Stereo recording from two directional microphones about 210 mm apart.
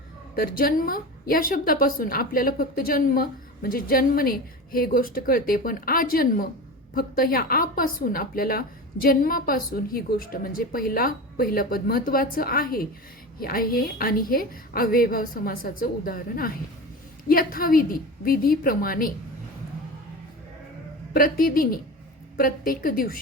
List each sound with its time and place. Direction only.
0.3 s a woman's voice: 45° left (ahead or behind)
21.1 s a woman's voice: 45° left (ahead or behind)